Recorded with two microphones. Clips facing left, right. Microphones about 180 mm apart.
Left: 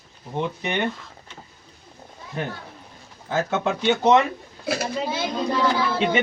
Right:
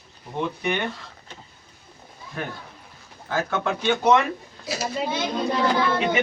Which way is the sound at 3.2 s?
20° left (ahead or behind).